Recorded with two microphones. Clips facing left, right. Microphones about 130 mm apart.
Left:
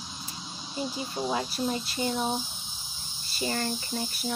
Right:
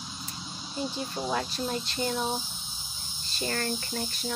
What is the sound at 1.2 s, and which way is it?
Speech, 10° left (ahead or behind).